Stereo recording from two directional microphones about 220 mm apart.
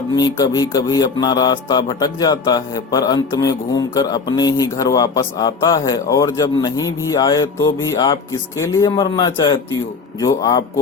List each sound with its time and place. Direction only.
0.2 s speech: 20° left (ahead or behind)